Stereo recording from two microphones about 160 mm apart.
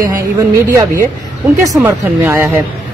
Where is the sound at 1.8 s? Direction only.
15° right (ahead or behind).